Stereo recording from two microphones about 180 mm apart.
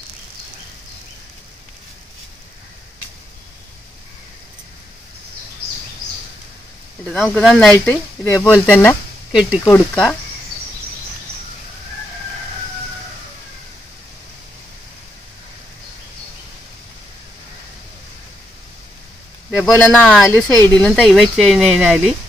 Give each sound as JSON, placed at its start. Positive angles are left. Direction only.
{"t": 7.1, "sound": "speech", "side_deg": 10}
{"t": 9.3, "sound": "speech", "side_deg": -5}
{"t": 9.7, "sound": "speech", "side_deg": 10}
{"t": 19.8, "sound": "speech", "side_deg": 5}
{"t": 20.4, "sound": "speech", "side_deg": 20}
{"t": 20.8, "sound": "speech", "side_deg": 0}